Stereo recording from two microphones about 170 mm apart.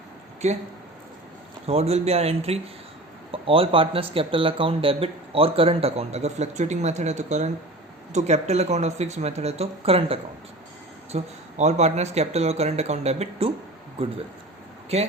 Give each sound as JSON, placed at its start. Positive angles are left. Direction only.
{"t": 0.4, "sound": "speech", "side_deg": -40}
{"t": 1.6, "sound": "speech", "side_deg": -35}
{"t": 14.9, "sound": "speech", "side_deg": -40}